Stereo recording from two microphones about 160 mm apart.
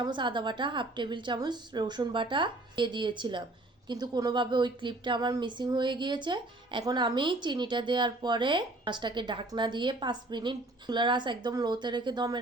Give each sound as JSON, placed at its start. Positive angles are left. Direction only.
{"t": 0.0, "sound": "a woman's voice", "side_deg": -30}